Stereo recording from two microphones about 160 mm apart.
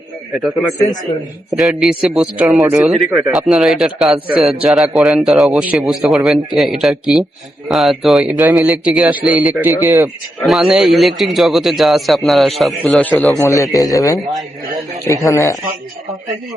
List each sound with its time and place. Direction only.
1.5 s a man's voice: centre (ahead or behind); by 10.1 s 20° right (ahead or behind)
10.4 s a man's voice: centre (ahead or behind)
13.4 s speech: 20° left (ahead or behind)